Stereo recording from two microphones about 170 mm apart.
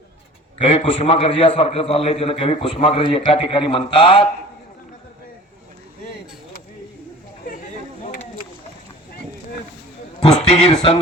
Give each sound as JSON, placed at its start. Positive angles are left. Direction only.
{"t": 0.6, "sound": "a man's voice", "side_deg": 35}
{"t": 10.5, "sound": "a man's voice", "side_deg": 35}